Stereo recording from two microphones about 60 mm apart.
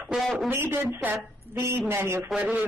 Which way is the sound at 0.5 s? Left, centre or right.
Right.